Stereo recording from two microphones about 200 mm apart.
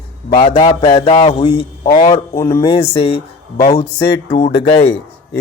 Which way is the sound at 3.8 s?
50° left (ahead or behind).